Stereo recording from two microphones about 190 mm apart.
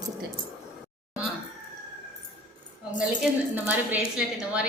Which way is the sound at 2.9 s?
5° right (ahead or behind).